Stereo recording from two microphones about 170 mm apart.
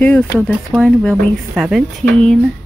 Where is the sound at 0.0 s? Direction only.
10° left (ahead or behind).